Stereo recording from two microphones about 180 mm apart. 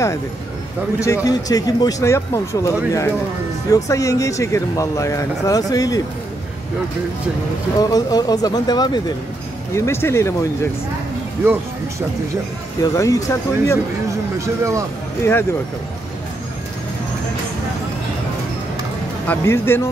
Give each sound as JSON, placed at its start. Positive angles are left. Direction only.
{"t": 1.0, "sound": "speech", "side_deg": 20}
{"t": 7.8, "sound": "speech", "side_deg": 20}
{"t": 12.8, "sound": "speech", "side_deg": 20}
{"t": 14.4, "sound": "speech", "side_deg": -15}
{"t": 19.2, "sound": "speech", "side_deg": 15}